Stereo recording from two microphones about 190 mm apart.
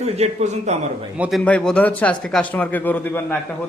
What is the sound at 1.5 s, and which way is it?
Speech, 5° left (ahead or behind).